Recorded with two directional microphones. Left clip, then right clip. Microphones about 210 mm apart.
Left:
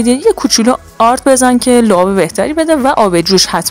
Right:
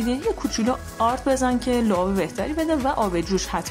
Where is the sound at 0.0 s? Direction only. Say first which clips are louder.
Left 14 dB; 40° left (ahead or behind).